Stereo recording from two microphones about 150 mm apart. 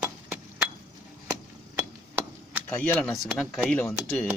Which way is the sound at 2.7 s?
15° left (ahead or behind).